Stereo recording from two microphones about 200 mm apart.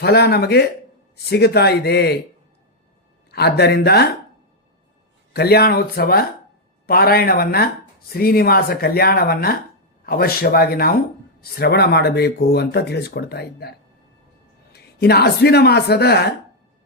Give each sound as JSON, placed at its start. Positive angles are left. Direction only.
{"t": 0.0, "sound": "a man's voice", "side_deg": 55}
{"t": 3.3, "sound": "speech", "side_deg": 55}
{"t": 5.3, "sound": "speech", "side_deg": 50}